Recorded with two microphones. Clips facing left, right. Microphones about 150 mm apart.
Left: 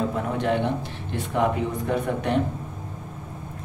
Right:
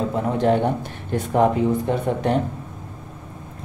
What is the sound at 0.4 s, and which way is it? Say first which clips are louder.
Speech: right 5 dB; 40° right (ahead or behind).